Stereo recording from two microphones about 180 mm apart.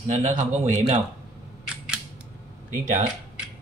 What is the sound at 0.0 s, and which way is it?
Speech, 45° right (ahead or behind).